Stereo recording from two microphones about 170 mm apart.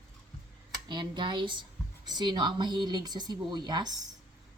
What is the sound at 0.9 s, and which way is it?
A woman's voice, 25° right (ahead or behind).